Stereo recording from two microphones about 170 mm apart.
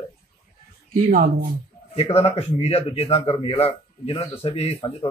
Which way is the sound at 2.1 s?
35° left (ahead or behind).